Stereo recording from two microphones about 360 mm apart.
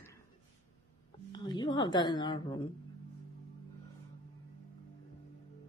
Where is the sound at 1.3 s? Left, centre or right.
Centre.